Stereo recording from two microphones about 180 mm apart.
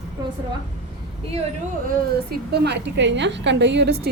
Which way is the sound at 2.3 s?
65° right (ahead or behind).